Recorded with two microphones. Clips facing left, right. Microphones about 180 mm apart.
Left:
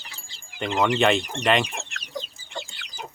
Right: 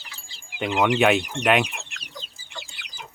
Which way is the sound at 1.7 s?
45° left (ahead or behind).